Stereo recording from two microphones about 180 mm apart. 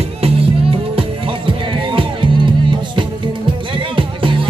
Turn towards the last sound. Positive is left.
turn(degrees=-30)  # may be behind; listen again after turning